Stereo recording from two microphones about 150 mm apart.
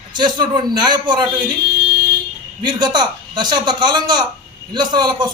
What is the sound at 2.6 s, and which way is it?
A man's voice, 30° right (ahead or behind).